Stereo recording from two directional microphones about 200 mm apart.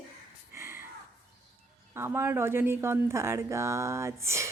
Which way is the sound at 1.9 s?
10° right (ahead or behind).